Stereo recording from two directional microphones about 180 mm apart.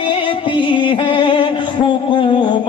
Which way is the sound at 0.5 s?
25° left (ahead or behind).